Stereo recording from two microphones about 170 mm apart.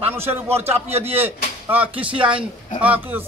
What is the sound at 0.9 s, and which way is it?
Speech, 35° right (ahead or behind).